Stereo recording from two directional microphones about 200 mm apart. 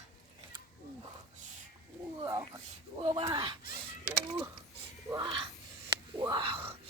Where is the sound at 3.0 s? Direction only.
25° right (ahead or behind).